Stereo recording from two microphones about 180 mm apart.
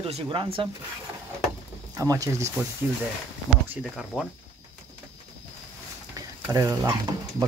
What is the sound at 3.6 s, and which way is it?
Speech, centre (ahead or behind).